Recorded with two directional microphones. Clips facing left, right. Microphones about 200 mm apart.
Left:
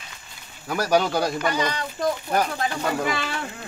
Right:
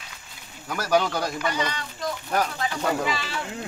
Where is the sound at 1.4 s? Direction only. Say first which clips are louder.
Left 3 dB; 45° left (ahead or behind).